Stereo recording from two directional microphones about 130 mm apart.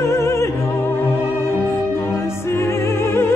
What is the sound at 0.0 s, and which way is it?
Music, 20° left (ahead or behind).